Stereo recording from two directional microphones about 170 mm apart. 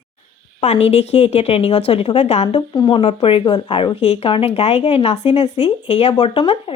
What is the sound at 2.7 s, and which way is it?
Speech, 25° left (ahead or behind).